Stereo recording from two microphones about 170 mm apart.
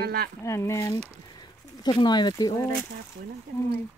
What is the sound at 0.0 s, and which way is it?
Speech, 65° right (ahead or behind).